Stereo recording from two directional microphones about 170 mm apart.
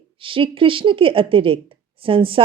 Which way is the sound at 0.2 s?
30° right (ahead or behind).